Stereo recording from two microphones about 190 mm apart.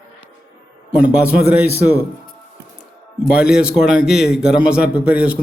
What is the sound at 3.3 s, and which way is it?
A man's voice, 5° right (ahead or behind).